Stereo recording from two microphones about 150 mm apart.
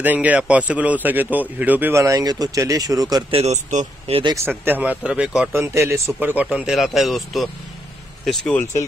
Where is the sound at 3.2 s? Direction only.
40° right (ahead or behind).